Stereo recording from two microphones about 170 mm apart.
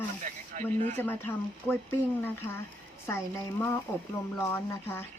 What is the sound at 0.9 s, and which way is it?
Speech, 10° left (ahead or behind).